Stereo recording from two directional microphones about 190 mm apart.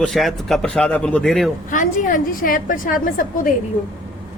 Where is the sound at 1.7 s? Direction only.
45° left (ahead or behind).